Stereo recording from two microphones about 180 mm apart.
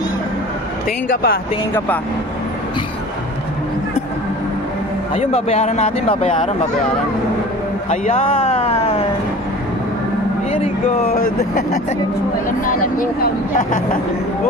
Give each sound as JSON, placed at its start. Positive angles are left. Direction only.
{"t": 1.1, "sound": "speech", "side_deg": 55}
{"t": 5.1, "sound": "speech", "side_deg": 35}
{"t": 7.9, "sound": "a sound", "side_deg": 40}
{"t": 11.1, "sound": "speech", "side_deg": 55}
{"t": 13.0, "sound": "speech", "side_deg": 50}